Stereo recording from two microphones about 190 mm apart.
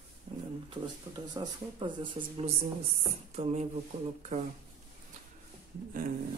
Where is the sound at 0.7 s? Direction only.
25° right (ahead or behind).